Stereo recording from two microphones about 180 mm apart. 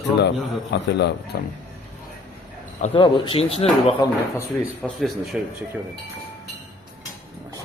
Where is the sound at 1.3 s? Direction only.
55° left (ahead or behind).